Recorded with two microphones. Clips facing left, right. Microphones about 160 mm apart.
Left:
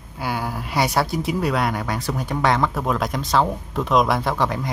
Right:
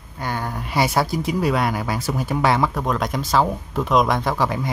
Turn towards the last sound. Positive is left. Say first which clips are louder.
# right 1 dB
turn(degrees=0)  # may be behind; listen again after turning